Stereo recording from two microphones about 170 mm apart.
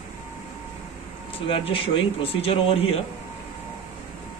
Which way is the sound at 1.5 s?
30° left (ahead or behind).